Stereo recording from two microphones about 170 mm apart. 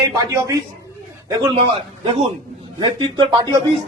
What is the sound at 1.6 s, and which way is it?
A man's voice, 35° right (ahead or behind).